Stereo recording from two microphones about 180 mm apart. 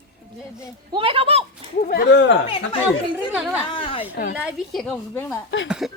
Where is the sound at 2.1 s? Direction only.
85° left.